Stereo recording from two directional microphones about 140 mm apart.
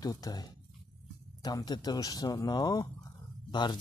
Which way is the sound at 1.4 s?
30° left (ahead or behind).